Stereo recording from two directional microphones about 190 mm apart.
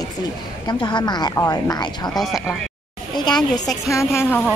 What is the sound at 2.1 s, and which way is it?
Speech, centre (ahead or behind).